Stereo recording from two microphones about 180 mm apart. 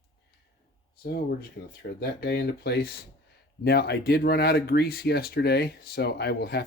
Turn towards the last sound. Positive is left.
turn(degrees=65)  # may be behind; listen again after turning